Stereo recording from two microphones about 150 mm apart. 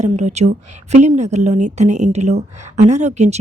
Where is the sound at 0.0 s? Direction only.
50° right (ahead or behind).